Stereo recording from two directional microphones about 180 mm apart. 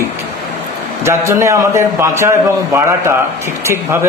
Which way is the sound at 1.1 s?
15° right (ahead or behind).